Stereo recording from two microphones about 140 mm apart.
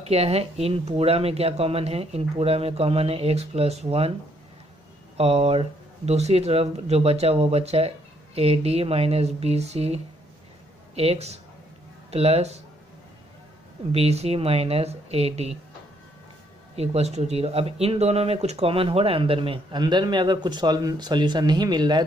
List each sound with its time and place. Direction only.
0.0 s speech: 45° right (ahead or behind)
5.1 s speech: 45° right (ahead or behind)
13.9 s speech: 50° right (ahead or behind)
16.7 s speech: 50° right (ahead or behind); by 22.0 s 30° right (ahead or behind)